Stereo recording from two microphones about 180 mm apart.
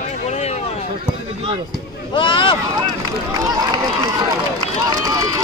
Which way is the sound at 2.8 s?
20° right (ahead or behind).